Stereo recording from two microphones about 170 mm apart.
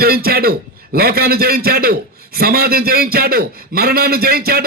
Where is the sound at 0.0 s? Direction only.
65° right (ahead or behind).